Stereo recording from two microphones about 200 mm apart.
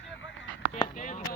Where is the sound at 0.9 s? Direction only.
40° left (ahead or behind).